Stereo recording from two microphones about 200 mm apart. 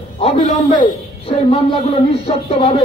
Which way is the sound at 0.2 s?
30° left (ahead or behind).